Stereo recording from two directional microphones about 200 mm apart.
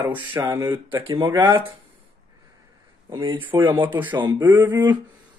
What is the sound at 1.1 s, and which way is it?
Speech, 20° right (ahead or behind).